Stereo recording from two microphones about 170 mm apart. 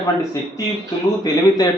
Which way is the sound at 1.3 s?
20° left (ahead or behind).